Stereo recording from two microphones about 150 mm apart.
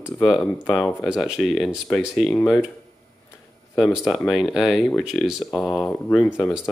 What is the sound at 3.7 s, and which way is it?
Speech, centre (ahead or behind).